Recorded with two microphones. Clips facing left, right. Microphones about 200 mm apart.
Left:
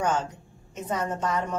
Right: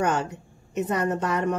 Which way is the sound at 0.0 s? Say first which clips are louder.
Right 2 dB; 65° right (ahead or behind).